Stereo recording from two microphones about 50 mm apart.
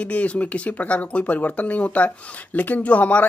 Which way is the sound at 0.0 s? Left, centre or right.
Left.